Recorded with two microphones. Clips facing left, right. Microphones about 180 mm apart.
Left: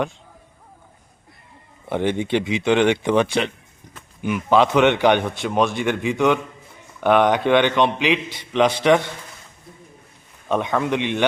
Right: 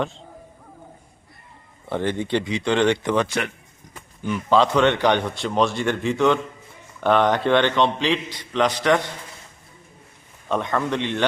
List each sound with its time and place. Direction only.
1.9 s a man's voice: 15° left (ahead or behind)
10.5 s speech: 10° left (ahead or behind)